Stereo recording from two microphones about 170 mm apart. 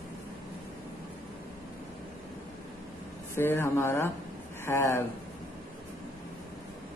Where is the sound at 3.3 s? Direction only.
15° left (ahead or behind).